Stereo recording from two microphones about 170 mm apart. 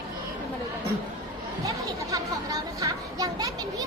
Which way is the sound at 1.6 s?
20° right (ahead or behind).